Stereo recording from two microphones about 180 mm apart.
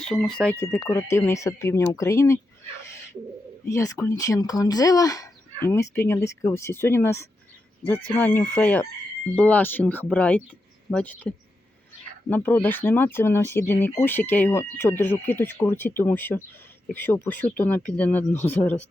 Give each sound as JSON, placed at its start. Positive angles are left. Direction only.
{"t": 0.0, "sound": "speech", "side_deg": 5}
{"t": 0.6, "sound": "speech", "side_deg": 15}
{"t": 3.7, "sound": "speech", "side_deg": 15}